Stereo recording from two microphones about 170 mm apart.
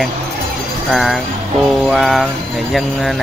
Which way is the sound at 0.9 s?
Centre (ahead or behind).